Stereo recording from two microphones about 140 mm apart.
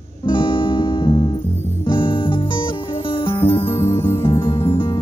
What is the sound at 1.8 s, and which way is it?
Music, 35° left (ahead or behind).